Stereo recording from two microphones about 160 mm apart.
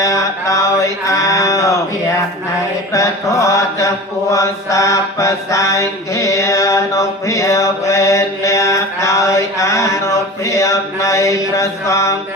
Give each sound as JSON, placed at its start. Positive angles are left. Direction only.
{"t": 0.0, "sound": "mantra", "side_deg": 20}
{"t": 2.9, "sound": "mantra", "side_deg": 20}